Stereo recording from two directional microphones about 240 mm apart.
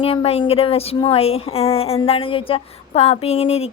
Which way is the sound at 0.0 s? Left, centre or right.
Left.